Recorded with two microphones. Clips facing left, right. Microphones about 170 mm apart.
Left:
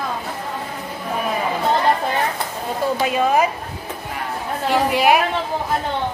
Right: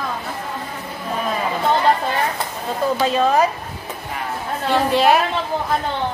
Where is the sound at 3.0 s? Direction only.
15° left (ahead or behind).